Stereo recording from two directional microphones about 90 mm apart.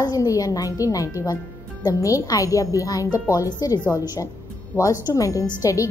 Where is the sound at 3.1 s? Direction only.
20° right (ahead or behind).